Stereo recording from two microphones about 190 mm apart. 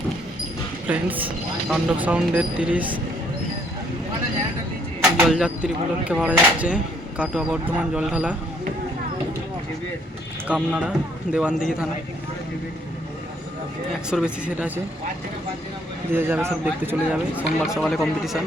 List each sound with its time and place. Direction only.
0.9 s speech: 10° right (ahead or behind)
5.3 s a man's voice: 5° right (ahead or behind)
10.5 s a man's voice: 5° right (ahead or behind)
14.1 s a man's voice: 5° right (ahead or behind)
16.1 s speech: 10° right (ahead or behind)